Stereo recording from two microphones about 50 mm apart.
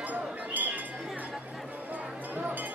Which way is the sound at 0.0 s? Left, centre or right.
Right.